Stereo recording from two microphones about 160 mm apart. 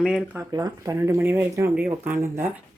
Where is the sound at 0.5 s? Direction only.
20° right (ahead or behind).